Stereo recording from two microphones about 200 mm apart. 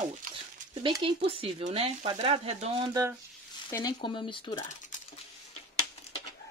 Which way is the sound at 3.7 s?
20° left (ahead or behind).